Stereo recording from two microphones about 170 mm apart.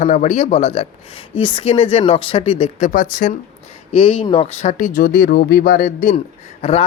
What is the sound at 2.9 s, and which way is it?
Speech, 50° left (ahead or behind).